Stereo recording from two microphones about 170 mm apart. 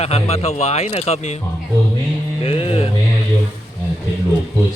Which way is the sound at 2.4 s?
35° left (ahead or behind).